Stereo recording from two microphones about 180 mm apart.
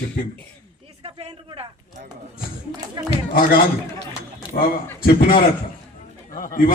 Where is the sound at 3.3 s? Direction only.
55° left (ahead or behind).